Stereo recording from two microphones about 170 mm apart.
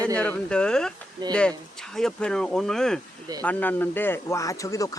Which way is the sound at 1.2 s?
25° right (ahead or behind).